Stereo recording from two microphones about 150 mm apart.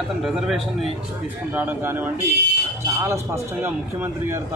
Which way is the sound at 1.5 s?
10° right (ahead or behind).